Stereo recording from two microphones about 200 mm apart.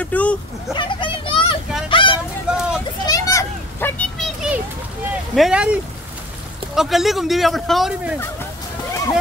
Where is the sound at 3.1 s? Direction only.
15° left (ahead or behind).